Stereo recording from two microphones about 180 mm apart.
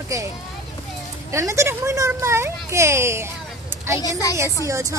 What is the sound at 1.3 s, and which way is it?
A child's voice, 15° right (ahead or behind).